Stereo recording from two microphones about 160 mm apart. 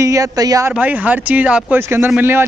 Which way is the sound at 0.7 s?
10° right (ahead or behind).